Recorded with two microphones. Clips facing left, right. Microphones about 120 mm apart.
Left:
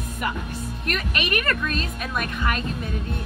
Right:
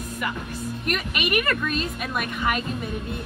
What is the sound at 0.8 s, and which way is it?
A woman's voice, 10° right (ahead or behind).